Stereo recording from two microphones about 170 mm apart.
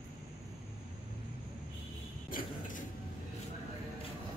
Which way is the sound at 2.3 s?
55° left (ahead or behind).